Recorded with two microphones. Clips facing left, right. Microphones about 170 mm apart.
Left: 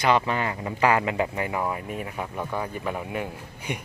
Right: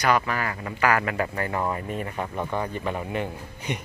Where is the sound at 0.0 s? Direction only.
25° left (ahead or behind).